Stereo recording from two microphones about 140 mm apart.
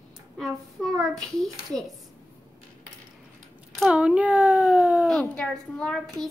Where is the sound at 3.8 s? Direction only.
5° right (ahead or behind).